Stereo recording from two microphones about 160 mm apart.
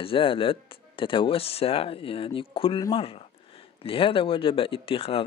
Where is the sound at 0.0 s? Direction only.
35° left (ahead or behind).